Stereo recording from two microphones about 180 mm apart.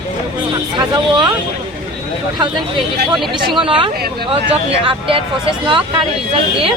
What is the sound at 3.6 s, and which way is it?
Speech, 30° right (ahead or behind).